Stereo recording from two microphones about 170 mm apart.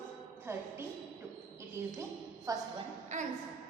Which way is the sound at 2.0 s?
20° right (ahead or behind).